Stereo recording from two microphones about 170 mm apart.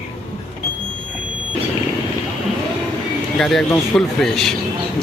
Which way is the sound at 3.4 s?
Centre (ahead or behind).